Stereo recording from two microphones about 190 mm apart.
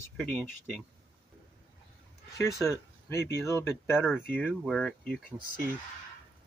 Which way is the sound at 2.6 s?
15° left (ahead or behind).